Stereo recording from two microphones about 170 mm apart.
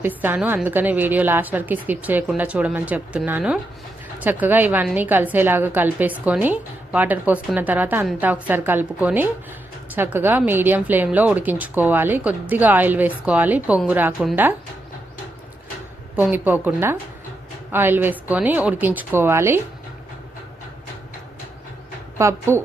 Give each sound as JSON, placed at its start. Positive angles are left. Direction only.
{"t": 0.0, "sound": "speech", "side_deg": -10}
{"t": 16.1, "sound": "speech", "side_deg": -10}
{"t": 22.2, "sound": "speech", "side_deg": -15}